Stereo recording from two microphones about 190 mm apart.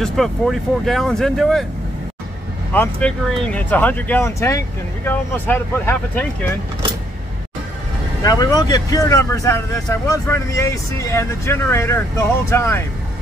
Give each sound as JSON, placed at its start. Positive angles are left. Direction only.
{"t": 0.0, "sound": "speech", "side_deg": 0}
{"t": 2.7, "sound": "speech", "side_deg": 10}
{"t": 8.2, "sound": "speech", "side_deg": 20}